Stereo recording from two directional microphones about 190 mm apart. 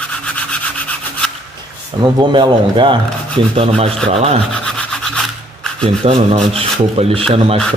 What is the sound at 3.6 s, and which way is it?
Rub, 30° right (ahead or behind).